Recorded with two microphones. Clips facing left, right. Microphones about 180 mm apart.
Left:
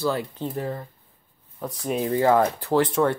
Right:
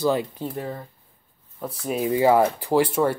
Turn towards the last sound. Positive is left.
turn(degrees=-10)  # may be behind; listen again after turning